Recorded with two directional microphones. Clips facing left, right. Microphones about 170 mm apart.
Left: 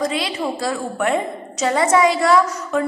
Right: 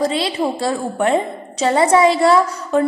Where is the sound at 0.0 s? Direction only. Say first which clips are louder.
Right 3 dB; 30° right (ahead or behind).